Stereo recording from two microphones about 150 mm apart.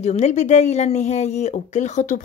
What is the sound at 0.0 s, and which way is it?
Speech, 50° left (ahead or behind).